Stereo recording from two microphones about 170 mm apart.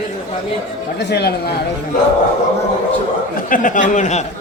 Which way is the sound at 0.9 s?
75° left (ahead or behind).